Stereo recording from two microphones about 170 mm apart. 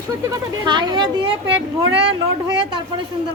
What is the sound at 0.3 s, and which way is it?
Speech, 25° right (ahead or behind).